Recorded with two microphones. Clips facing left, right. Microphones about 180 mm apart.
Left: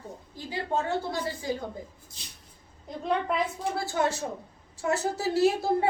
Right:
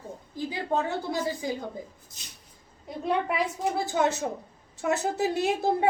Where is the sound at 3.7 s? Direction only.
20° right (ahead or behind).